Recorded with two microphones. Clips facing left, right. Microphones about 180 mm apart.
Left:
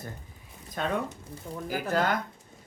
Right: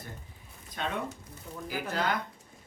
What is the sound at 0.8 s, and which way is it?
Speech, 45° left (ahead or behind).